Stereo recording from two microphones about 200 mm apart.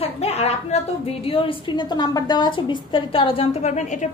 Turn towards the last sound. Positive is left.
turn(degrees=35)  # may be behind; listen again after turning